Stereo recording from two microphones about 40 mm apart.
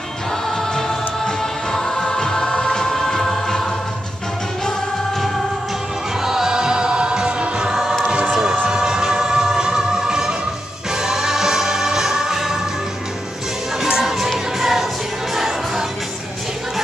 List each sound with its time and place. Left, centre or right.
0.5 s music: centre
6.2 s music: centre
8.0 s choir: right
8.6 s music: centre
13.7 s music: centre